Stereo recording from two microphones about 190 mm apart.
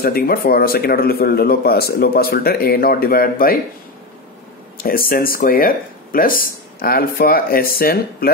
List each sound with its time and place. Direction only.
0.0 s speech: 50° left (ahead or behind)
4.8 s speech: 50° left (ahead or behind)